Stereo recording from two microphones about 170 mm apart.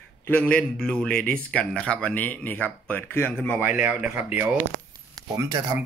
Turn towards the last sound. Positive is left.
turn(degrees=-20)  # may be behind; listen again after turning